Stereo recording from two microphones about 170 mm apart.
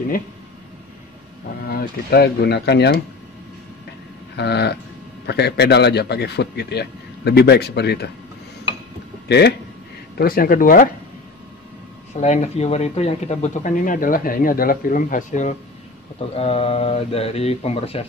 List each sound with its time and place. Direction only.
1.7 s a man's voice: 65° left (ahead or behind)
4.4 s a man's voice: 80° left
10.1 s speech: 60° left (ahead or behind)
12.2 s speech: 40° left (ahead or behind)
16.3 s speech: 35° left (ahead or behind)